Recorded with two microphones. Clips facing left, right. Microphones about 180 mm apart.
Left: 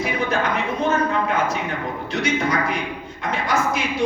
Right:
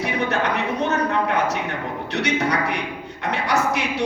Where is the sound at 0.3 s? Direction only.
70° right (ahead or behind).